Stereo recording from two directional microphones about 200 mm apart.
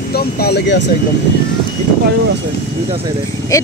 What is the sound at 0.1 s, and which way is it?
Speech, 50° left (ahead or behind).